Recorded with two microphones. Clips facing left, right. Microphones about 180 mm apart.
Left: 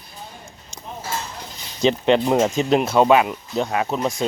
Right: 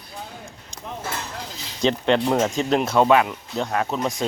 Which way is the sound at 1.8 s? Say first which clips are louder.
Left 2 dB; 15° left (ahead or behind).